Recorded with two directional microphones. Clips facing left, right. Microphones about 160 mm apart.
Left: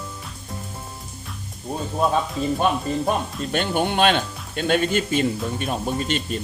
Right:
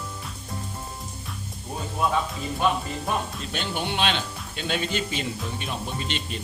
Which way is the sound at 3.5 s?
50° left (ahead or behind).